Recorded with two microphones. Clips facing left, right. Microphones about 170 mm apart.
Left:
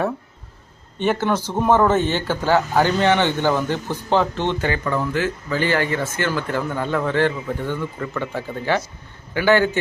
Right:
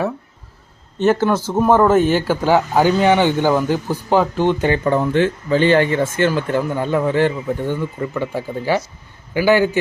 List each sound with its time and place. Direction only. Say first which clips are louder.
1.1 s speech: right 4 dB; 10° right (ahead or behind)
4.7 s speech: right 6 dB; 30° right (ahead or behind); by 9.6 s 10° right (ahead or behind)